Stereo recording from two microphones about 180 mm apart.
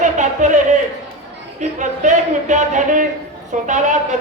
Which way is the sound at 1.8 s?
40° right (ahead or behind).